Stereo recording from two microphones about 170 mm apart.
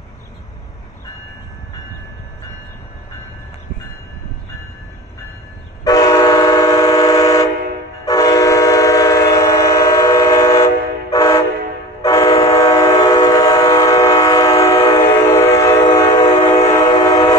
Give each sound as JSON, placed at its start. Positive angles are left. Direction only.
{"t": 5.9, "sound": "vehicle horn", "side_deg": 20}
{"t": 8.0, "sound": "train", "side_deg": 20}
{"t": 16.5, "sound": "train", "side_deg": 40}
{"t": 16.8, "sound": "train", "side_deg": 20}